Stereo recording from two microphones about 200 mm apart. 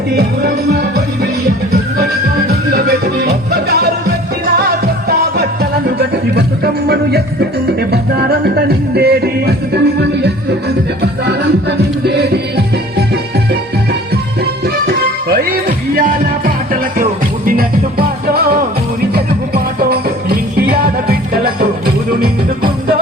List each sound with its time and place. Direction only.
0.2 s music: 55° right (ahead or behind)
6.8 s music: 55° right (ahead or behind)
12.0 s music: 55° right (ahead or behind)
17.0 s music: 45° right (ahead or behind)